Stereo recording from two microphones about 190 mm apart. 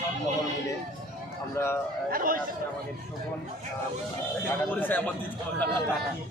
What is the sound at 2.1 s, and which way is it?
Speech, 45° right (ahead or behind).